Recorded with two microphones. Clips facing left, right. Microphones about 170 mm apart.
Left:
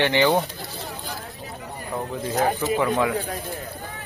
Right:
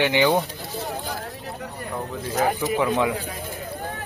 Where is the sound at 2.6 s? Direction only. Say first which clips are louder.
Left 1 dB; 15° right (ahead or behind).